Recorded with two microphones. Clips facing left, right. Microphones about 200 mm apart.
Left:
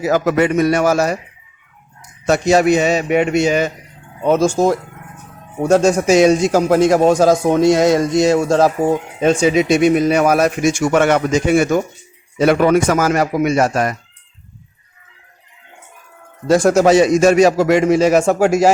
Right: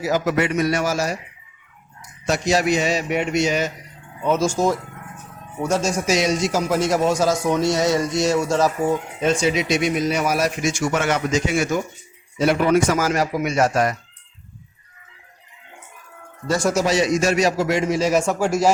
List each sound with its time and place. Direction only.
0.1 s a man's voice: 55° left (ahead or behind)
2.2 s a man's voice: 55° left (ahead or behind)
7.8 s a sound: 50° left (ahead or behind)
8.8 s speech: 35° left (ahead or behind)
9.2 s a man's voice: 55° left (ahead or behind)
16.5 s a man's voice: 55° left (ahead or behind)